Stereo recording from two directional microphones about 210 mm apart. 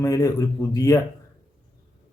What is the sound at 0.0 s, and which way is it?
Speech, 15° left (ahead or behind).